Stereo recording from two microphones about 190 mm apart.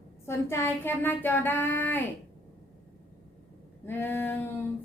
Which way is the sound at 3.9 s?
10° left (ahead or behind).